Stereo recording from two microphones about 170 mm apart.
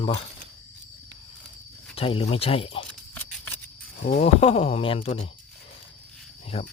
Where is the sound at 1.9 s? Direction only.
35° left (ahead or behind).